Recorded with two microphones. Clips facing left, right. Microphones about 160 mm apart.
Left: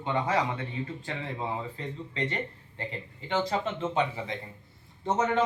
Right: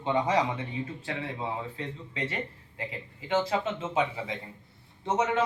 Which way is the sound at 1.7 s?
5° right (ahead or behind).